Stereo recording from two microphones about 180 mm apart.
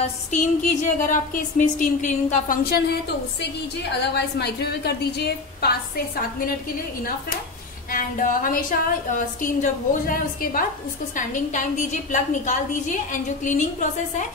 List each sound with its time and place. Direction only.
0.0 s a woman's voice: 45° left (ahead or behind)
2.6 s a woman's voice: 60° left (ahead or behind)
7.9 s a woman's voice: 50° left (ahead or behind)